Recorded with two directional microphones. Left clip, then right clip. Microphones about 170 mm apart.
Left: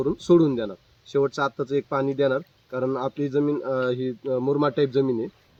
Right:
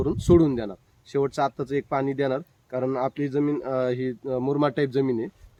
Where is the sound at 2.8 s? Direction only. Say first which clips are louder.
Right 1 dB; 10° right (ahead or behind).